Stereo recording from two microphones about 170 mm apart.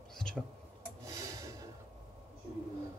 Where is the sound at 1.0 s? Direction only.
20° right (ahead or behind).